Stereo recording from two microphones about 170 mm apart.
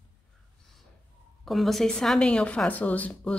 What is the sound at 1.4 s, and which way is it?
A woman's voice, centre (ahead or behind).